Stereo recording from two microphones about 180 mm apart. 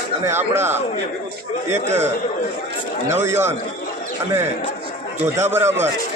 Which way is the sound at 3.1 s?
10° right (ahead or behind).